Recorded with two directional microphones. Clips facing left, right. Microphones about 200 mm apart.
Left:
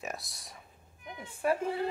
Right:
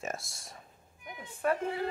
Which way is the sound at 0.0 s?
Centre (ahead or behind).